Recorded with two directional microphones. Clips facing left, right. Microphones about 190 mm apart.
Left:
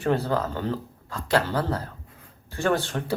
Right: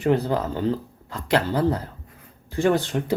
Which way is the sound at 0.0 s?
15° right (ahead or behind).